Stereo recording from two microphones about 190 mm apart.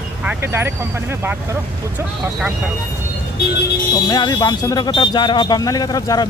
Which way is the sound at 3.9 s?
20° left (ahead or behind).